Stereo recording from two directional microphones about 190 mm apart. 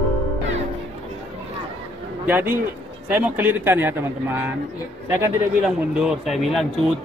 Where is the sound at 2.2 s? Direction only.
10° right (ahead or behind).